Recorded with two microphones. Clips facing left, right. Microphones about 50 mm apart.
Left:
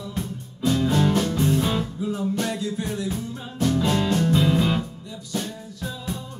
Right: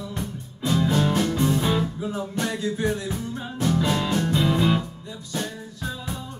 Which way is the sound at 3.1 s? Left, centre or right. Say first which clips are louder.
Even; centre.